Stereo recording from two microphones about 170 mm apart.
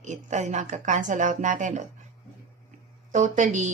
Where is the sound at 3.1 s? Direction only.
50° right (ahead or behind).